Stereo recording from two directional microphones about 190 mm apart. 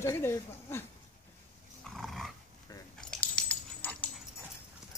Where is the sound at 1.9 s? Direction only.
Centre (ahead or behind).